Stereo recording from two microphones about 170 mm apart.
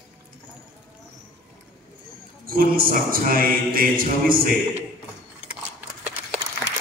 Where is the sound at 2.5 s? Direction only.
60° right (ahead or behind).